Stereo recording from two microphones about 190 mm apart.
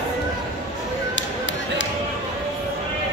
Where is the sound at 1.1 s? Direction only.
80° left.